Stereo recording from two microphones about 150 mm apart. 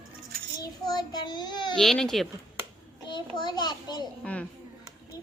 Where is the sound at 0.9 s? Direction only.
30° left (ahead or behind).